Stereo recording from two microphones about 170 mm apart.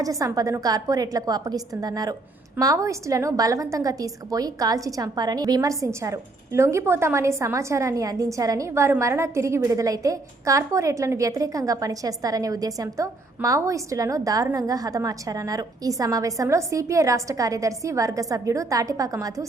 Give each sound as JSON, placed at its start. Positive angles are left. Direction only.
{"t": 0.0, "sound": "a woman's voice", "side_deg": -20}